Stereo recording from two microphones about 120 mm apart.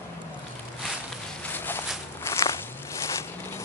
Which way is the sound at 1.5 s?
20° left (ahead or behind).